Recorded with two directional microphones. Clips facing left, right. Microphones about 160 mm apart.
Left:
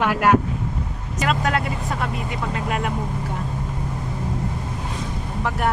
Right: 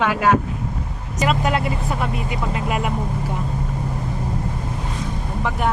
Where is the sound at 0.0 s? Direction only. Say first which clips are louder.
Even; 5° left (ahead or behind).